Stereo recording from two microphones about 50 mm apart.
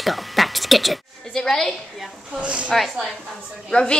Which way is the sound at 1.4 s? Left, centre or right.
Centre.